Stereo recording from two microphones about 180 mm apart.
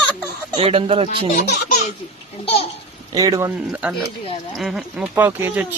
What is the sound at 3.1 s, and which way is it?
Speech, 20° right (ahead or behind).